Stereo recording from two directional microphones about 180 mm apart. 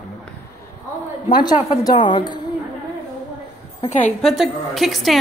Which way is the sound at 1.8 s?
25° left (ahead or behind).